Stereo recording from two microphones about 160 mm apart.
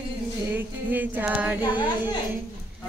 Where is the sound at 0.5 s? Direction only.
10° right (ahead or behind).